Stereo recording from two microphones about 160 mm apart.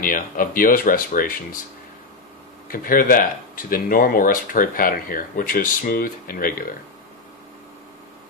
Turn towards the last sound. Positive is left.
turn(degrees=60)  # may be behind; listen again after turning